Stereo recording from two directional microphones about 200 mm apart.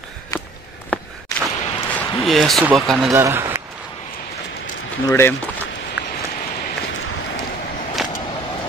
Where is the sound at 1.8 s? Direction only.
10° left (ahead or behind).